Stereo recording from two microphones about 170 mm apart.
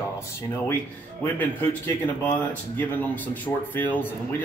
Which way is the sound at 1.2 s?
10° left (ahead or behind).